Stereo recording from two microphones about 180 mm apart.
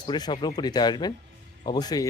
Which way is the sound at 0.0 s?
25° left (ahead or behind).